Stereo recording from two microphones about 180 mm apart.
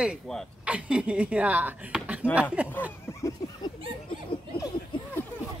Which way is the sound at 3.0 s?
15° left (ahead or behind).